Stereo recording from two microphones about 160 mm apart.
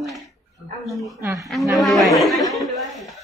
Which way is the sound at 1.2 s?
20° right (ahead or behind).